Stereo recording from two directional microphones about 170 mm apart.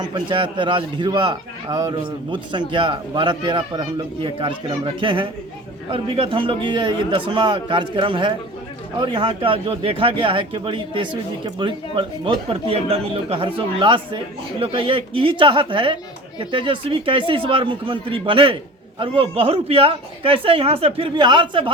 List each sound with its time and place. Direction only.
0.1 s a man's voice: 30° right (ahead or behind)